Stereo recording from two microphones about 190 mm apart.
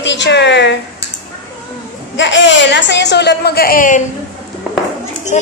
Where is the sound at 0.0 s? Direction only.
70° left (ahead or behind).